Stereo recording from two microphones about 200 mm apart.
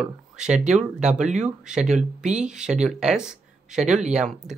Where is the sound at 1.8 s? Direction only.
35° right (ahead or behind).